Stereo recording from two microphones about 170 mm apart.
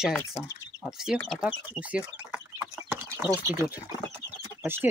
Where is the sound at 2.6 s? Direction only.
15° right (ahead or behind).